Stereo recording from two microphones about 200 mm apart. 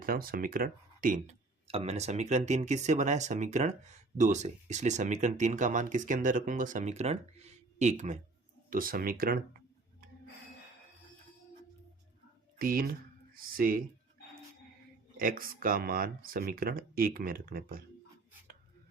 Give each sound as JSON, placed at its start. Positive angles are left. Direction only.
{"t": 0.0, "sound": "speech", "side_deg": -45}
{"t": 1.6, "sound": "speech", "side_deg": -30}
{"t": 12.5, "sound": "speech", "side_deg": -45}
{"t": 15.2, "sound": "speech", "side_deg": -45}